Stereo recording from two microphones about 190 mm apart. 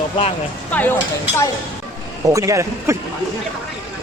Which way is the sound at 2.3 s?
15° right (ahead or behind).